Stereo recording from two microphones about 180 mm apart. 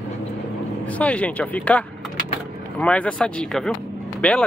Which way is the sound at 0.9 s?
5° left (ahead or behind).